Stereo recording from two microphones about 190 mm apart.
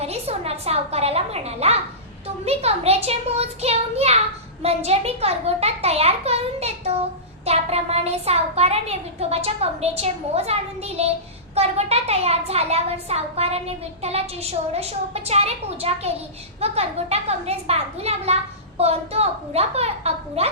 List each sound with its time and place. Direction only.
0.0 s a woman's voice: 30° right (ahead or behind)